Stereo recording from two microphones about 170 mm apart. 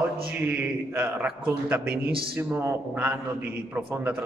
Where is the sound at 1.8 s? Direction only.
65° right (ahead or behind).